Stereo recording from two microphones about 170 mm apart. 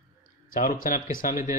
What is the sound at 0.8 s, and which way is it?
Speech, 55° left (ahead or behind).